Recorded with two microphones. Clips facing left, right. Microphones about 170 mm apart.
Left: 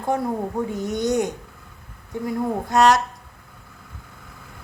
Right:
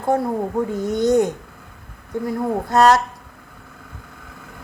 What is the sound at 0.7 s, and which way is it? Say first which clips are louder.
Speech: right 7 dB; 20° left (ahead or behind).